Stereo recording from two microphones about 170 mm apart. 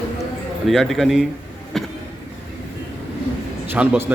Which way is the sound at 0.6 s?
Centre (ahead or behind).